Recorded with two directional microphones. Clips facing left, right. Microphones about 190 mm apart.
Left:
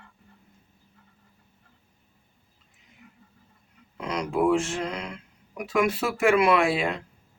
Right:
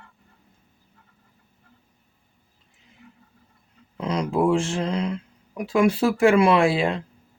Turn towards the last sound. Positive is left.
turn(degrees=-30)  # may be behind; listen again after turning